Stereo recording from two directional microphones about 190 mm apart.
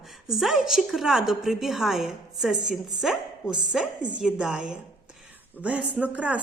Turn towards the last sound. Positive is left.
turn(degrees=-5)  # may be behind; listen again after turning